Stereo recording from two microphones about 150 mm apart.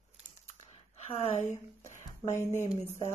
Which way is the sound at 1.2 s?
45° left (ahead or behind).